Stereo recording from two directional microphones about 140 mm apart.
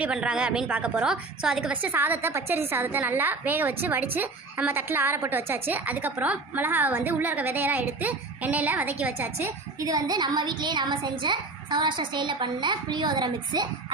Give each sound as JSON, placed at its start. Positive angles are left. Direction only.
{"t": 0.0, "sound": "a woman's voice", "side_deg": -5}
{"t": 9.8, "sound": "a child's voice", "side_deg": -25}